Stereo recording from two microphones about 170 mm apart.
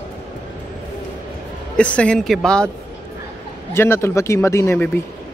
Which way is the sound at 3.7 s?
15° left (ahead or behind).